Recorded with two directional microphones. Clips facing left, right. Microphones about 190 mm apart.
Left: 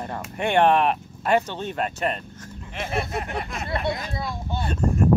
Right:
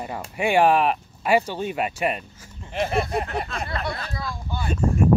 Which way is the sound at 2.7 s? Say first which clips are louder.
Right 4 dB; 35° right (ahead or behind).